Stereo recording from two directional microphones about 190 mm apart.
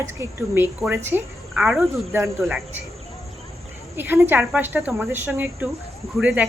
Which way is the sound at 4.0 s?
10° right (ahead or behind).